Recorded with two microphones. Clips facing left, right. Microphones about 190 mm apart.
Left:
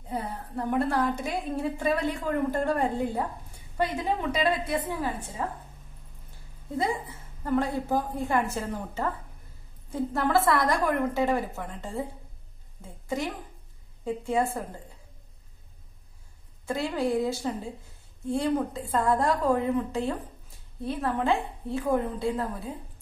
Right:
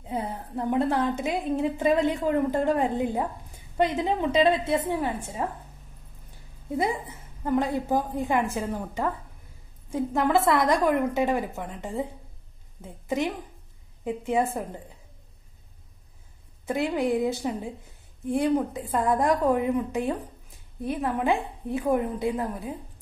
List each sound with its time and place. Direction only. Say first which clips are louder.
0.1 s a woman's voice: right 2 dB; 20° right (ahead or behind)
6.8 s a woman's voice: right 1 dB; 20° right (ahead or behind)
14.0 s a woman's voice: right 1 dB; 20° right (ahead or behind)
16.6 s a woman's voice: right 2 dB; 20° right (ahead or behind)